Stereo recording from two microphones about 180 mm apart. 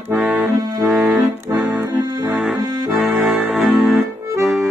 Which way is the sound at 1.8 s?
20° right (ahead or behind).